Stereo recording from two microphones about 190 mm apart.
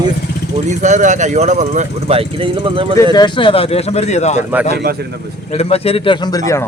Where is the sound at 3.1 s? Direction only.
25° left (ahead or behind).